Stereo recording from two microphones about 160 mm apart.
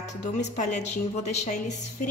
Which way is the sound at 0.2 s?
50° left (ahead or behind).